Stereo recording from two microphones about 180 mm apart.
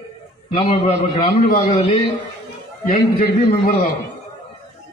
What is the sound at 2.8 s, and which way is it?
Speech, 50° left (ahead or behind).